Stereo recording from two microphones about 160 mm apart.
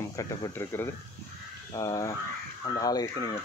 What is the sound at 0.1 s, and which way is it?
Speech, 20° left (ahead or behind).